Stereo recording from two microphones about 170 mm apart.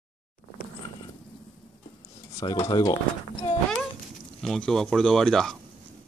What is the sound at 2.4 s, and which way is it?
Speech, 20° left (ahead or behind).